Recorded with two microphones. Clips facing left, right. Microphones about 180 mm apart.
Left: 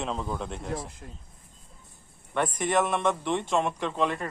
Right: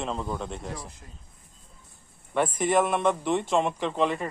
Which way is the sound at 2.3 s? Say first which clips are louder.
Right 2 dB; 5° right (ahead or behind).